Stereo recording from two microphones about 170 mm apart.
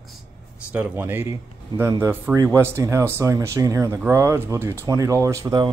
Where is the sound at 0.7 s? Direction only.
5° right (ahead or behind).